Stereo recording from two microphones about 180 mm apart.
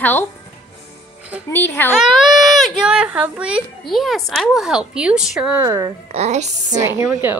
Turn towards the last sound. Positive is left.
turn(degrees=-15)  # may be behind; listen again after turning